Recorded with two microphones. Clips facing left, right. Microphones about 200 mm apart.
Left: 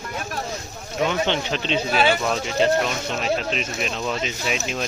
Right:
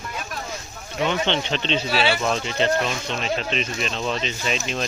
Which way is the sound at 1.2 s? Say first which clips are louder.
Even; 10° left (ahead or behind).